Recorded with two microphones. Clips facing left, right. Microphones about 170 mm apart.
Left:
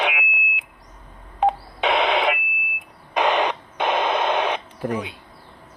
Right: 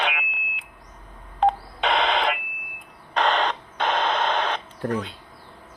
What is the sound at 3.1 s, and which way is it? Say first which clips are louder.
Radio: left 2 dB; 10° left (ahead or behind).